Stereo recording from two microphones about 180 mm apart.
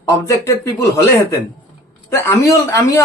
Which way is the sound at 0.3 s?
15° left (ahead or behind).